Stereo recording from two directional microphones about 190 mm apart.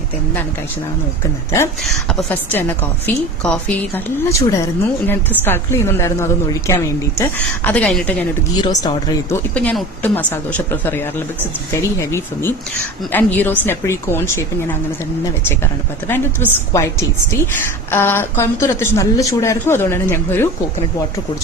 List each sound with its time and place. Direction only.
1.9 s a woman's voice: 5° left (ahead or behind)
8.6 s speech: 25° left (ahead or behind)
9.6 s a woman's voice: 5° left (ahead or behind)